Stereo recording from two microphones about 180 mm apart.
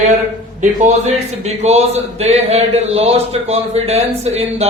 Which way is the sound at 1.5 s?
35° right (ahead or behind).